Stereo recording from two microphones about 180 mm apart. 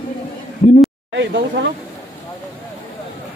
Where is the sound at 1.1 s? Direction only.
85° right.